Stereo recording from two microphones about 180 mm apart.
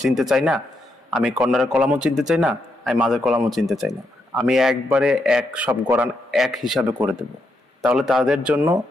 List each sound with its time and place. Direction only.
0.0 s a man's voice: centre (ahead or behind)
6.8 s speech: 20° right (ahead or behind)
7.8 s a man's voice: 5° right (ahead or behind)